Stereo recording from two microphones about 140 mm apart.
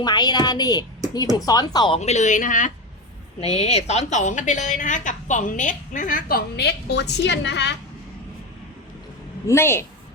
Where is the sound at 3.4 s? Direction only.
50° left (ahead or behind); by 6.4 s 85° left.